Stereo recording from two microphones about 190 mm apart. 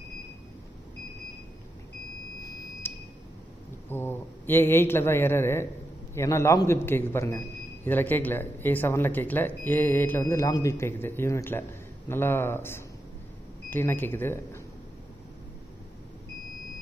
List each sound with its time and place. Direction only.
2.4 s smoke detector: 15° left (ahead or behind)
3.9 s a man's voice: 10° left (ahead or behind)